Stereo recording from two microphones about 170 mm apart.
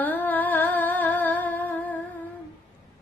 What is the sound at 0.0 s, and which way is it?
Humming, 10° left (ahead or behind).